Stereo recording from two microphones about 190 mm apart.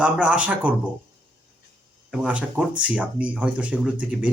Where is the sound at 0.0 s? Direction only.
5° right (ahead or behind).